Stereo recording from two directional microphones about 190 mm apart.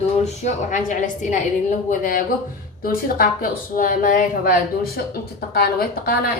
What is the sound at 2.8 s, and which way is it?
A woman's voice, 50° left (ahead or behind).